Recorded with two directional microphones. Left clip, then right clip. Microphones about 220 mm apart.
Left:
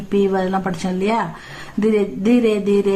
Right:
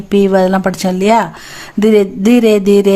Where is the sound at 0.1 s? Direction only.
50° right (ahead or behind).